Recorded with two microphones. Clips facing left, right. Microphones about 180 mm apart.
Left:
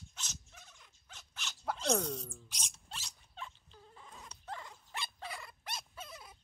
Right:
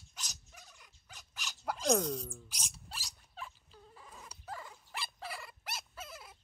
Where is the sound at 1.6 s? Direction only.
10° right (ahead or behind).